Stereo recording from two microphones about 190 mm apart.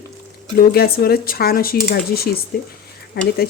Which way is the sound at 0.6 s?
55° left (ahead or behind).